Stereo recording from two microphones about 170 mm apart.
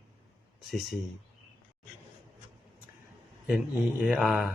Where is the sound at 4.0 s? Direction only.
5° right (ahead or behind).